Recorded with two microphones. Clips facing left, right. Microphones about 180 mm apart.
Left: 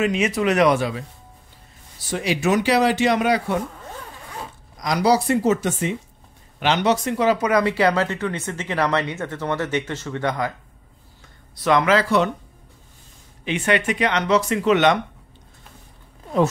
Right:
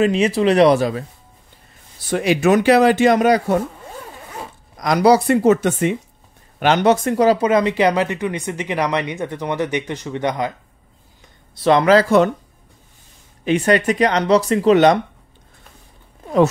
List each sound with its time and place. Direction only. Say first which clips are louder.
0.0 s speech: right 5 dB; 30° right (ahead or behind)
2.0 s speech: right 6 dB; 55° right (ahead or behind)
4.7 s speech: right 5 dB; 55° right (ahead or behind)
6.6 s speech: right 5 dB; 50° right (ahead or behind); by 10.5 s 20° right (ahead or behind)
11.5 s speech: right 5 dB; 30° right (ahead or behind)
13.4 s speech: right 5 dB; 40° right (ahead or behind)